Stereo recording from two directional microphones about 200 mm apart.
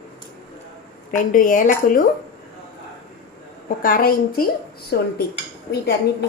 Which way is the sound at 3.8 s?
45° left (ahead or behind).